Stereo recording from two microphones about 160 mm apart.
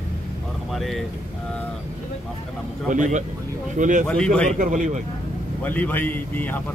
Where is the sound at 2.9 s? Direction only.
50° right (ahead or behind).